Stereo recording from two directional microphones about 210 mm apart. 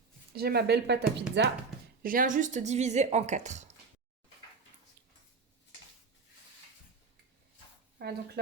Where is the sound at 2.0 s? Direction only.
40° right (ahead or behind).